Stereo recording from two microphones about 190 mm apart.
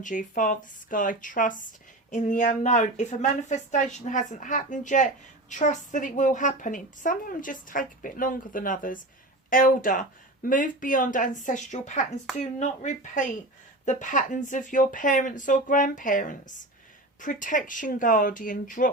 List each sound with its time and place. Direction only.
0.0 s a woman's voice: 45° left (ahead or behind)